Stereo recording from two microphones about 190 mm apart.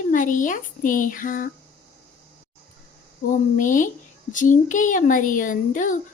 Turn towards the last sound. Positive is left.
turn(degrees=45)  # may be behind; listen again after turning